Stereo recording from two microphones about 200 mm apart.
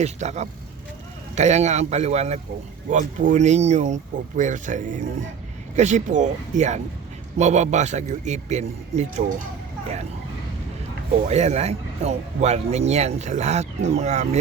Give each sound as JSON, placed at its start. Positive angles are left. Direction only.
{"t": 0.0, "sound": "speech", "side_deg": -35}
{"t": 11.3, "sound": "speech", "side_deg": -35}